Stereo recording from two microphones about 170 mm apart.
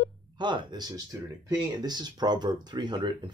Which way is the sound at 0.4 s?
25° right (ahead or behind).